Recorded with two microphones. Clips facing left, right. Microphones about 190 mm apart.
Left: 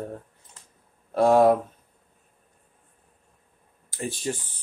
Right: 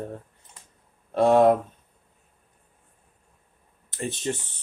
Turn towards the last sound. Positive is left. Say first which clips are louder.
# right 1 dB
turn(degrees=10)  # may be behind; listen again after turning